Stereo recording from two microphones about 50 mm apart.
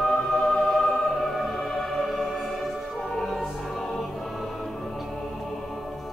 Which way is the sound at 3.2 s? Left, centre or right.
Centre.